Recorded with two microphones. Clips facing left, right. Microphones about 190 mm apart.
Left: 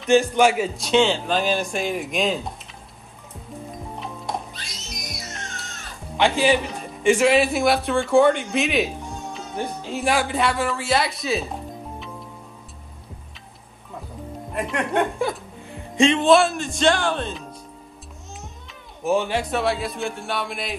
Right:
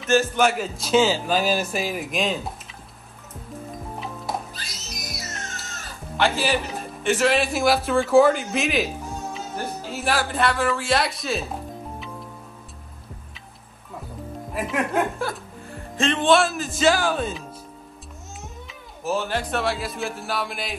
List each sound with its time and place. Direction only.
0.5 s a man's voice: centre (ahead or behind)
3.9 s music: centre (ahead or behind)
7.2 s a man's voice: centre (ahead or behind)
14.5 s a man's voice: centre (ahead or behind)
15.1 s music: 15° left (ahead or behind)
16.0 s a man's voice: centre (ahead or behind)
18.7 s a man's voice: centre (ahead or behind)